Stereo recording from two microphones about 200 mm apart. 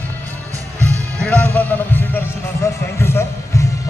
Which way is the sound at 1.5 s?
10° left (ahead or behind).